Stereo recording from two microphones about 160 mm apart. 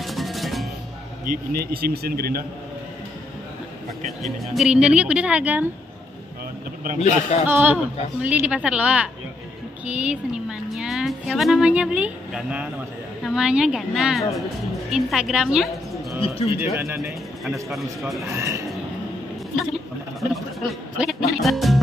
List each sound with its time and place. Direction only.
0.0 s music: centre (ahead or behind)
1.2 s speech: 65° right (ahead or behind)
4.2 s speech: 5° right (ahead or behind)
7.0 s a man's voice: 45° left (ahead or behind)
7.4 s a woman's voice: 10° right (ahead or behind)
16.7 s speech: 15° right (ahead or behind)
17.5 s a woman's voice: centre (ahead or behind)
18.3 s speech: 20° right (ahead or behind)
20.2 s a sound: centre (ahead or behind)
21.3 s music: centre (ahead or behind)